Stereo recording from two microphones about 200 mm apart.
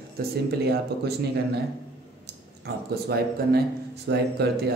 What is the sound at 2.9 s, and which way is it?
A man's voice, 50° right (ahead or behind).